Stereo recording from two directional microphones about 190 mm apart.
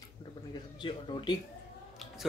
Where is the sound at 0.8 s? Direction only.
25° left (ahead or behind).